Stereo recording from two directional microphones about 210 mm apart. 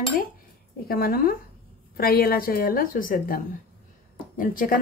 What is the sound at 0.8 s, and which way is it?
A woman's voice, 45° left (ahead or behind).